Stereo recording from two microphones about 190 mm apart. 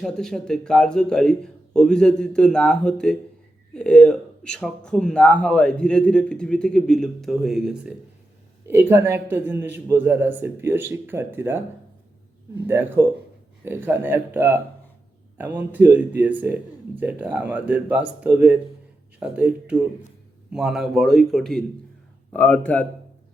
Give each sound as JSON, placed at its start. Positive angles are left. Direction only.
{"t": 0.0, "sound": "speech", "side_deg": 0}